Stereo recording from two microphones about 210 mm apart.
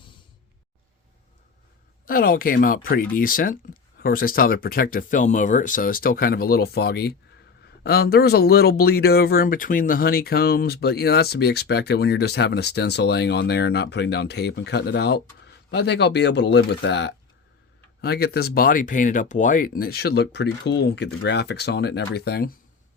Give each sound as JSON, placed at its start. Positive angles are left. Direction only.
{"t": 2.0, "sound": "speech", "side_deg": 45}